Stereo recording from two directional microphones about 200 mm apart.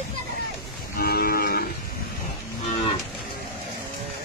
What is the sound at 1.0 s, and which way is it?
Cattle, 50° left (ahead or behind).